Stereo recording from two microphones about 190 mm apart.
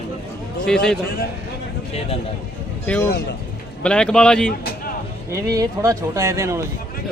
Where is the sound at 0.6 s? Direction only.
5° left (ahead or behind).